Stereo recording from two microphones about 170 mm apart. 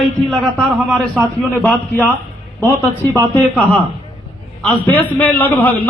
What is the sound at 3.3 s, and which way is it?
A man's voice, 10° left (ahead or behind).